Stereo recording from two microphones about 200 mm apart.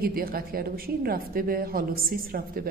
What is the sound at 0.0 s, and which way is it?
A woman's voice, 50° right (ahead or behind).